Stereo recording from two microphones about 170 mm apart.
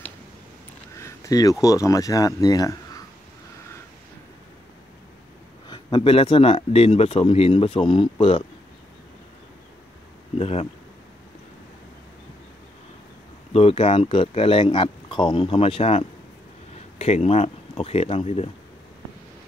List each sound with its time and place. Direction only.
0.9 s speech: 20° left (ahead or behind)
5.7 s speech: 30° left (ahead or behind)
10.3 s speech: 35° left (ahead or behind)
13.5 s speech: 35° left (ahead or behind)